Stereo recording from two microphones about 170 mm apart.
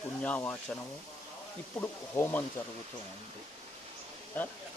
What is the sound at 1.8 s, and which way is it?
Speech, 10° left (ahead or behind).